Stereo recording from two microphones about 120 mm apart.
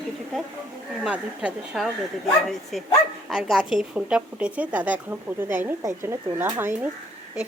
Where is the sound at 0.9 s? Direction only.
5° right (ahead or behind).